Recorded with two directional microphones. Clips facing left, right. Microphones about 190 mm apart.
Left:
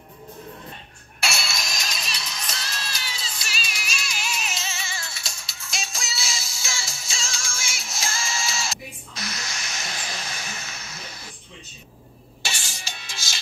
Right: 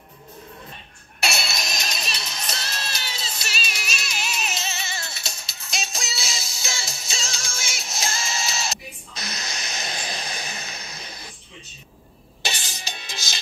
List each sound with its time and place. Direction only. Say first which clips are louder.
1.2 s music: right 2 dB; 20° right (ahead or behind)
4.3 s music: right 1 dB; 65° right (ahead or behind)
4.8 s music: right 2 dB; 20° right (ahead or behind)
12.4 s music: right 3 dB; 20° right (ahead or behind)